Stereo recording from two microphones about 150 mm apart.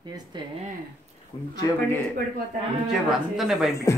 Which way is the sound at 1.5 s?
20° left (ahead or behind).